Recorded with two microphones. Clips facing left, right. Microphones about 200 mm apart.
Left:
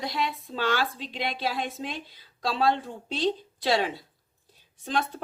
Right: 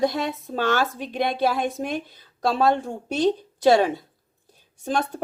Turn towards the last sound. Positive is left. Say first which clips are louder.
# right 4 dB
turn(degrees=-45)  # may be behind; listen again after turning